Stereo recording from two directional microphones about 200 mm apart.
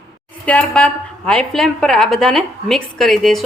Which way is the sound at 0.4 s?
5° left (ahead or behind).